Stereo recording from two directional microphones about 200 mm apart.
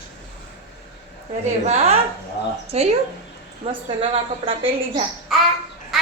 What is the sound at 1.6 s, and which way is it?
A woman's voice, 30° right (ahead or behind).